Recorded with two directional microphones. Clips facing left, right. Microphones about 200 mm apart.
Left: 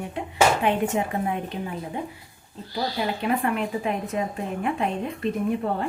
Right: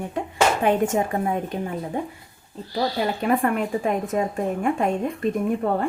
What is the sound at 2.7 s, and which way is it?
Speech, 45° right (ahead or behind).